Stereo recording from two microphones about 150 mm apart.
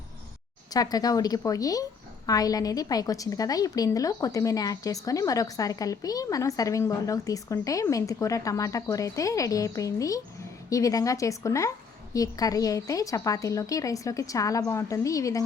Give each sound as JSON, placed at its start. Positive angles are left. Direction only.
{"t": 0.7, "sound": "a woman's voice", "side_deg": 25}